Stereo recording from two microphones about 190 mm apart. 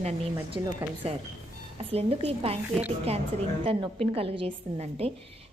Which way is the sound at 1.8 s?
30° right (ahead or behind).